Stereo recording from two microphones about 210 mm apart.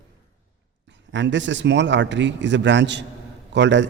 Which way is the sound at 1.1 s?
60° right (ahead or behind).